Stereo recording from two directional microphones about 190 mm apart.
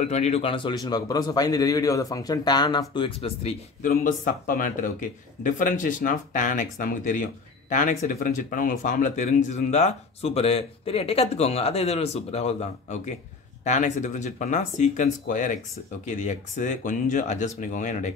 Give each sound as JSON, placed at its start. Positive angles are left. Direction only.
{"t": 0.0, "sound": "speech", "side_deg": 35}
{"t": 3.8, "sound": "speech", "side_deg": 45}